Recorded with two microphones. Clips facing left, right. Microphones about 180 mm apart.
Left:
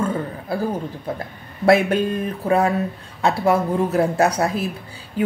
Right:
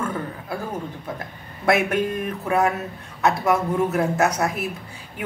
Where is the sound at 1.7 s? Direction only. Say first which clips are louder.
Left 4 dB; 30° left (ahead or behind).